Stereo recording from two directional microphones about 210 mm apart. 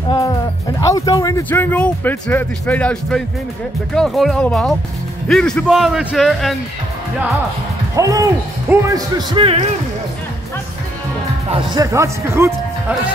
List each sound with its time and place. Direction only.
0.7 s speech: 15° left (ahead or behind); by 6.5 s centre (ahead or behind)
7.9 s speech: 15° right (ahead or behind)
11.5 s speech: 20° right (ahead or behind)